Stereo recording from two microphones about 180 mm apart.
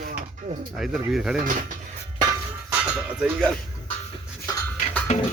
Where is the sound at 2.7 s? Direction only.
5° right (ahead or behind).